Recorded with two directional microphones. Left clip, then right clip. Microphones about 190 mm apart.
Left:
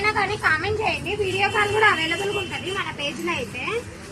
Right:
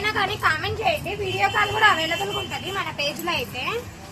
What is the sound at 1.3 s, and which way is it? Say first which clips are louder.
Speech: even; 25° right (ahead or behind).